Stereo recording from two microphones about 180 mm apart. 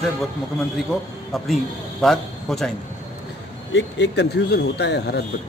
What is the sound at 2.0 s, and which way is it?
Speech, centre (ahead or behind).